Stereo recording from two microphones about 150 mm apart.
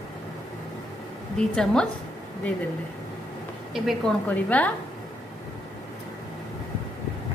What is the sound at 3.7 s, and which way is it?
Speech, centre (ahead or behind).